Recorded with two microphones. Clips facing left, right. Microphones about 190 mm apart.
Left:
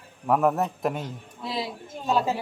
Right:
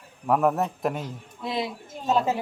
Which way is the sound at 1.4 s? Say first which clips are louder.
Right 2 dB; 20° right (ahead or behind).